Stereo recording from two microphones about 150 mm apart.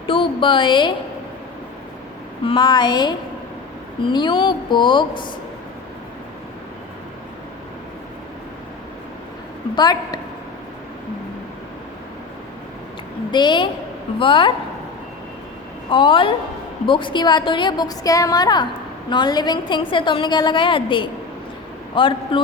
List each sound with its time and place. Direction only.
0.1 s speech: 35° left (ahead or behind)
2.4 s a woman's voice: 35° left (ahead or behind)
9.7 s a woman's voice: 25° left (ahead or behind)
13.3 s a woman's voice: 30° left (ahead or behind)
15.9 s a woman's voice: 35° left (ahead or behind)